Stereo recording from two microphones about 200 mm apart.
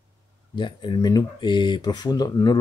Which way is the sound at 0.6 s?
25° left (ahead or behind).